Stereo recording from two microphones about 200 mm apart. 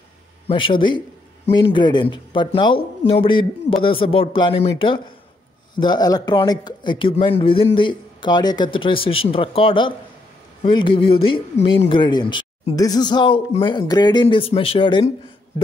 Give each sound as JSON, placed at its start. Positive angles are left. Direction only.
{"t": 0.5, "sound": "speech", "side_deg": 25}